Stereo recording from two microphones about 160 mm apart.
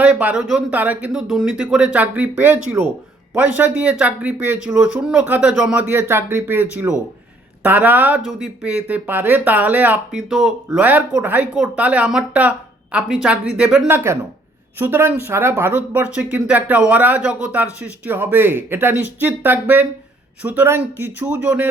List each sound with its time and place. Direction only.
0.0 s speech: 10° right (ahead or behind)
5.8 s speech: 15° right (ahead or behind)
13.8 s speech: 15° right (ahead or behind)